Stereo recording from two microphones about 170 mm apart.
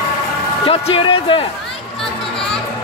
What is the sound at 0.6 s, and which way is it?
Speech, 35° left (ahead or behind).